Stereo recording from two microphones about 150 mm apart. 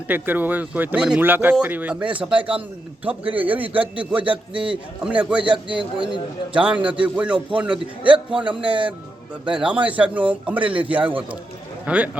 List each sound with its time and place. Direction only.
0.1 s speech: 10° right (ahead or behind)
5.4 s speech: 35° right (ahead or behind)
6.5 s speech: 5° right (ahead or behind)
8.6 s speech: 35° right (ahead or behind)
9.5 s speech: 5° right (ahead or behind)